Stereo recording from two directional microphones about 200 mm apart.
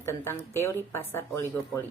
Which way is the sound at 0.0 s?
10° left (ahead or behind).